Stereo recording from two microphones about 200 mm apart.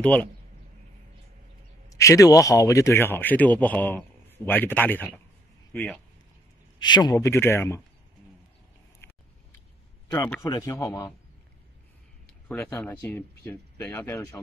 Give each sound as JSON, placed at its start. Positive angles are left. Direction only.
{"t": 0.0, "sound": "speech", "side_deg": 5}
{"t": 1.9, "sound": "speech", "side_deg": 15}
{"t": 6.8, "sound": "speech", "side_deg": 20}
{"t": 10.0, "sound": "speech", "side_deg": 10}
{"t": 12.4, "sound": "speech", "side_deg": 10}